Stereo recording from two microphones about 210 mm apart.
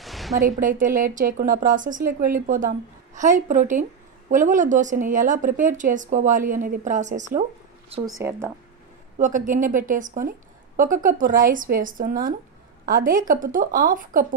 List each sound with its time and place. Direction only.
0.0 s a sound: centre (ahead or behind)
0.4 s a woman's voice: 40° right (ahead or behind)
7.9 s speech: 15° right (ahead or behind)
9.2 s a woman's voice: 40° right (ahead or behind)